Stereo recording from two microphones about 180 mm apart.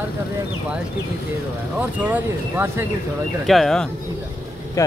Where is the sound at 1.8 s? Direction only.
10° right (ahead or behind).